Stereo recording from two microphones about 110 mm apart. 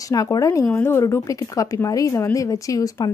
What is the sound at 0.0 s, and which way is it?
Speech, 35° left (ahead or behind).